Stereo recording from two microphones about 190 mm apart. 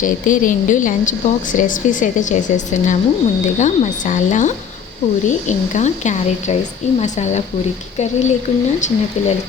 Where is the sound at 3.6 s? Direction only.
40° left (ahead or behind).